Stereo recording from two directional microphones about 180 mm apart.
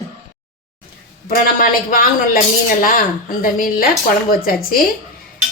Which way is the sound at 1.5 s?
50° left (ahead or behind).